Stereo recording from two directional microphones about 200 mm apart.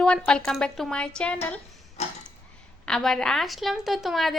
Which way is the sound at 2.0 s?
35° left (ahead or behind).